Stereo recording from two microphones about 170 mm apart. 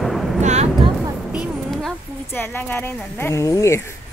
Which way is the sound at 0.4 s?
40° right (ahead or behind).